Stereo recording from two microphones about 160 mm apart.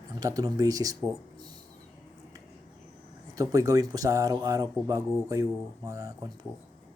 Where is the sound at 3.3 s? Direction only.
20° right (ahead or behind).